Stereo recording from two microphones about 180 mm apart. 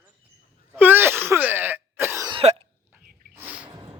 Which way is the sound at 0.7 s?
10° right (ahead or behind).